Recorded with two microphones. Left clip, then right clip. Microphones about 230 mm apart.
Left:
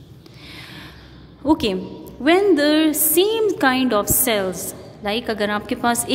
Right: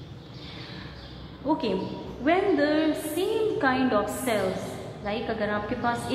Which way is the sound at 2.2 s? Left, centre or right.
Left.